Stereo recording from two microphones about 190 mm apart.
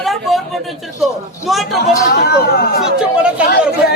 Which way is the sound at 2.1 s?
55° left (ahead or behind).